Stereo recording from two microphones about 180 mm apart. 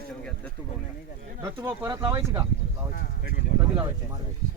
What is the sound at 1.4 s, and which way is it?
Speech, 15° right (ahead or behind).